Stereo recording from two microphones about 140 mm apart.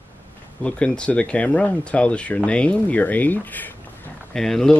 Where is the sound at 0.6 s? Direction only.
5° left (ahead or behind).